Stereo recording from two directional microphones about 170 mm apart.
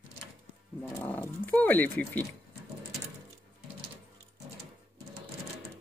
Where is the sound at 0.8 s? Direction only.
10° left (ahead or behind).